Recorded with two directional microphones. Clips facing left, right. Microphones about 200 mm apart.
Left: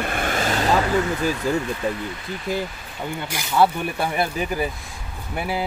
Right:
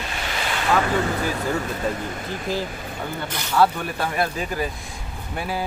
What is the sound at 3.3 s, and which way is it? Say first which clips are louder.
Speech: left 1 dB; 10° left (ahead or behind).